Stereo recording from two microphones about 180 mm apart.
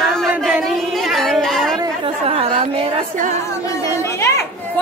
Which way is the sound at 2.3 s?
35° right (ahead or behind).